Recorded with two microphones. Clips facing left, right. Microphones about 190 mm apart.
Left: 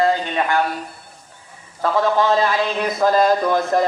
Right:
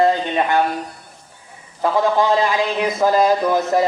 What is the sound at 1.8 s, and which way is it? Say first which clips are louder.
A man's voice: right 1 dB; 15° right (ahead or behind).